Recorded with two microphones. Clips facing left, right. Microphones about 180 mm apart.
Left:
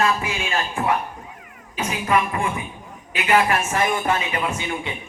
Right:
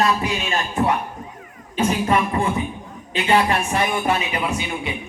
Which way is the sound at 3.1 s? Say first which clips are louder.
Right 1 dB; 30° right (ahead or behind).